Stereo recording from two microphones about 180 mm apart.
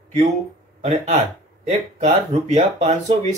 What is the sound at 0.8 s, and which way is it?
Speech, 40° right (ahead or behind).